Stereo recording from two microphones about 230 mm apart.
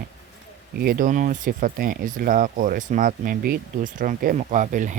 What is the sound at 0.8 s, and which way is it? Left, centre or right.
Speech, right.